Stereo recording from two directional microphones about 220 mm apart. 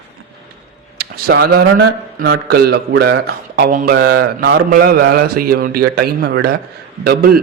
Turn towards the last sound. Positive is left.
turn(degrees=-45)  # may be behind; listen again after turning